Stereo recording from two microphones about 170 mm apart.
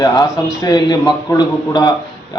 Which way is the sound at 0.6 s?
20° left (ahead or behind).